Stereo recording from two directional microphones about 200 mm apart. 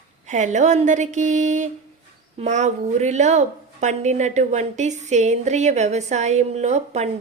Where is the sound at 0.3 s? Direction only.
35° right (ahead or behind).